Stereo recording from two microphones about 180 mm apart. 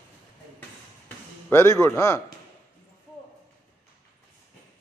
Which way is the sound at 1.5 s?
15° left (ahead or behind).